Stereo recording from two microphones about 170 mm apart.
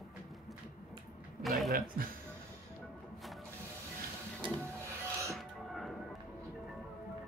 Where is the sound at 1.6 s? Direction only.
60° right (ahead or behind).